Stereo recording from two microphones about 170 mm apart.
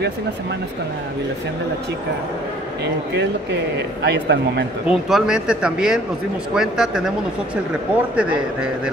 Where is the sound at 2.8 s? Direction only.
85° right.